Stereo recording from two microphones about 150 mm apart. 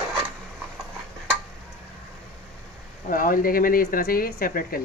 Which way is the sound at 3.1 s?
70° left (ahead or behind).